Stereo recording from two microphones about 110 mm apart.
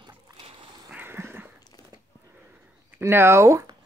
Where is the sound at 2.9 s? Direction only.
20° right (ahead or behind).